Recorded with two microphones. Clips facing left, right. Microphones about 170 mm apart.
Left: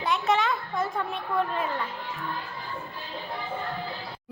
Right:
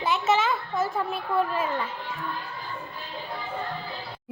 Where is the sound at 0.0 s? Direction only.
Centre (ahead or behind).